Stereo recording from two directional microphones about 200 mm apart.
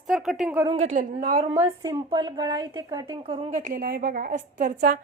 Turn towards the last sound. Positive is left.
turn(degrees=-40)  # may be behind; listen again after turning